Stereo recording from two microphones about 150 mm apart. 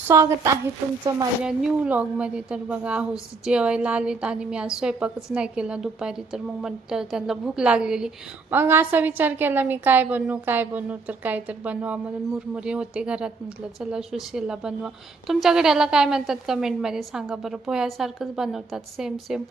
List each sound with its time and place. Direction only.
0.1 s a woman's voice: 20° right (ahead or behind)
1.4 s a woman's voice: 5° right (ahead or behind)